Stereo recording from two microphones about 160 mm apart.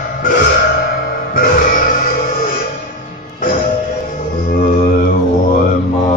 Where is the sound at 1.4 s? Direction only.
65° left (ahead or behind).